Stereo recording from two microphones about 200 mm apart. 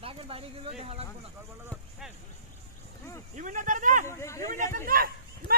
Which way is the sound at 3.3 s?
40° right (ahead or behind).